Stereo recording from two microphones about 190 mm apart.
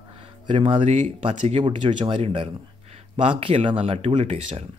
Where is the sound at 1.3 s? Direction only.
40° right (ahead or behind).